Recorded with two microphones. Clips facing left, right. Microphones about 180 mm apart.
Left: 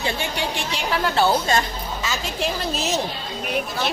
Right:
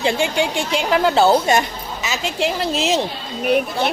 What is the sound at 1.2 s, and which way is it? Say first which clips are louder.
Speech: right 5 dB; 20° right (ahead or behind).